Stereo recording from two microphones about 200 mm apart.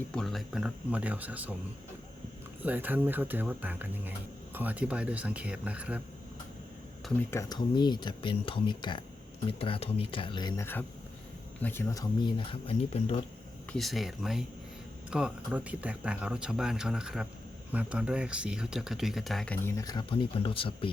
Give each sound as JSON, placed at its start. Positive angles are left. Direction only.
{"t": 0.1, "sound": "speech", "side_deg": 0}
{"t": 2.6, "sound": "speech", "side_deg": -10}
{"t": 7.3, "sound": "speech", "side_deg": 15}
{"t": 11.6, "sound": "speech", "side_deg": 10}
{"t": 13.7, "sound": "speech", "side_deg": 0}
{"t": 19.6, "sound": "speech", "side_deg": 15}